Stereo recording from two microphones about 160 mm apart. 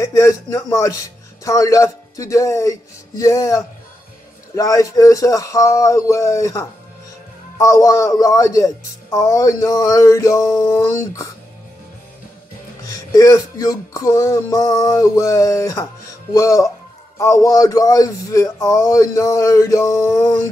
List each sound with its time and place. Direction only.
0.0 s speech: 20° left (ahead or behind)
12.8 s speech: 20° left (ahead or behind)